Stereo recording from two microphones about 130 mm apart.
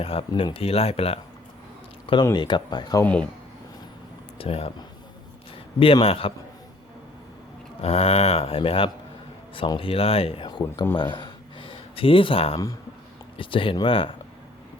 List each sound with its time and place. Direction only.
0.0 s speech: 45° left (ahead or behind)
2.3 s speech: 35° left (ahead or behind)
3.0 s speech: 10° left (ahead or behind)
4.4 s speech: 50° left (ahead or behind)
5.8 s speech: 45° left (ahead or behind)
7.8 s speech: 50° left (ahead or behind)
10.9 s a sound: 35° left (ahead or behind)
13.3 s speech: 40° left (ahead or behind)